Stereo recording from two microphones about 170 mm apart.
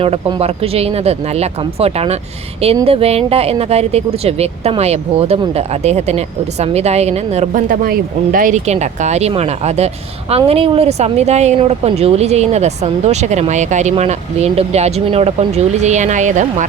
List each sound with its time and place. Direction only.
0.0 s speech: 35° right (ahead or behind)